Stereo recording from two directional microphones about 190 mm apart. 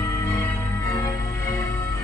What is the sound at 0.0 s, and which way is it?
Music, 15° left (ahead or behind).